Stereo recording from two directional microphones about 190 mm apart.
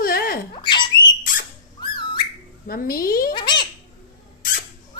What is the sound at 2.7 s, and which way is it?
Speech, 50° left (ahead or behind).